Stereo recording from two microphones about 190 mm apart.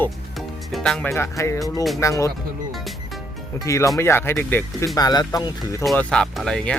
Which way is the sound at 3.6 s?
15° left (ahead or behind).